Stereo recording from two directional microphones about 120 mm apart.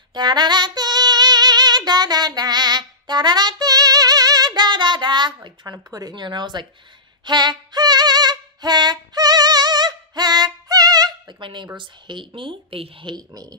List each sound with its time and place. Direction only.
0.1 s female singing: 35° right (ahead or behind)
12.4 s speech: 45° right (ahead or behind)